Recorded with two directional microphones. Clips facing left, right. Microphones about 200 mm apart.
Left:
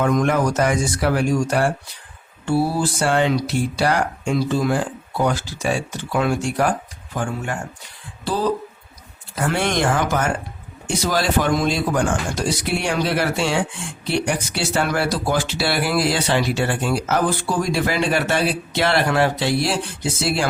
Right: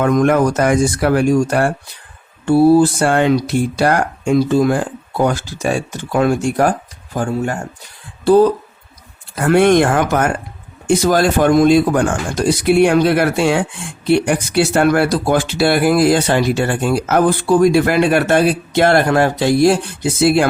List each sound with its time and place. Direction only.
0.0 s speech: 55° right (ahead or behind)
3.0 s speech: 50° right (ahead or behind)
8.2 s speech: 55° right (ahead or behind)